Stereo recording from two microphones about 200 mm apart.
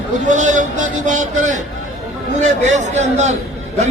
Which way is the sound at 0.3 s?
40° right (ahead or behind).